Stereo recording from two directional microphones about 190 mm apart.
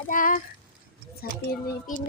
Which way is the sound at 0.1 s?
45° left (ahead or behind).